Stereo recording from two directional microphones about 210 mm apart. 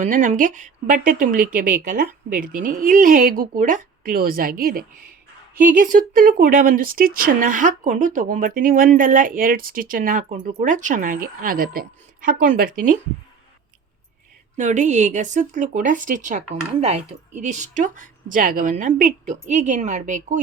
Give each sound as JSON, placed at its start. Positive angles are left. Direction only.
{"t": 0.0, "sound": "speech", "side_deg": -40}
{"t": 14.5, "sound": "speech", "side_deg": -35}